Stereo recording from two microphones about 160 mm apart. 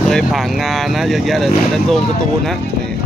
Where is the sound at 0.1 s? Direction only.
Centre (ahead or behind).